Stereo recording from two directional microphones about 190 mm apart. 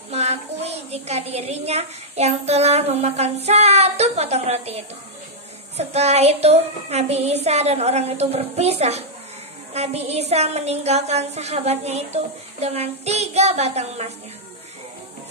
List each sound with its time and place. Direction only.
0.1 s a woman's voice: 35° right (ahead or behind)